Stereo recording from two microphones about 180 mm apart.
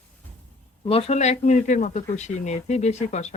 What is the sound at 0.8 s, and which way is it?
A man's voice, 30° left (ahead or behind).